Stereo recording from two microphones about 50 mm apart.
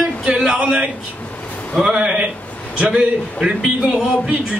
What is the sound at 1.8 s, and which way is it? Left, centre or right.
A man's voice, centre.